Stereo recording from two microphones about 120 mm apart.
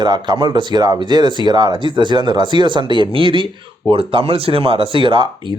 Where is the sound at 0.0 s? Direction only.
40° right (ahead or behind).